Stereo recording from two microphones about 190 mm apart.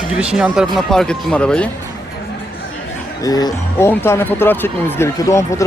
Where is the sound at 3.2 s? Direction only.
20° left (ahead or behind).